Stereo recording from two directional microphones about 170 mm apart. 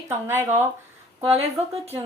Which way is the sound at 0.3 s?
15° right (ahead or behind).